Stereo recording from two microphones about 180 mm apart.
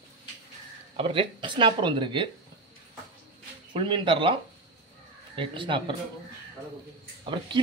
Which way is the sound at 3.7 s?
30° right (ahead or behind).